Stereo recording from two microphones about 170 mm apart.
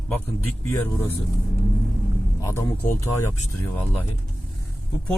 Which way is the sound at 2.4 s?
15° left (ahead or behind).